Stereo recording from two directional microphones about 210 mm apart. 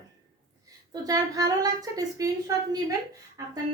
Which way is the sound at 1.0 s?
15° right (ahead or behind).